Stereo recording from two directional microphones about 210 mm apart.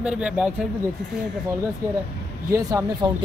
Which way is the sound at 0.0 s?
5° right (ahead or behind).